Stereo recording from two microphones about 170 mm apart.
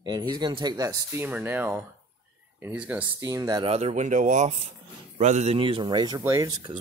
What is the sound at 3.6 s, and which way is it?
Speech, 40° right (ahead or behind).